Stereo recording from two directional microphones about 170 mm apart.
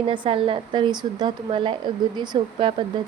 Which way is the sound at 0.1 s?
30° right (ahead or behind).